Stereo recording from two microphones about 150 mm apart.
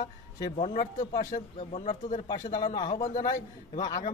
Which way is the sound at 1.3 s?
55° left (ahead or behind).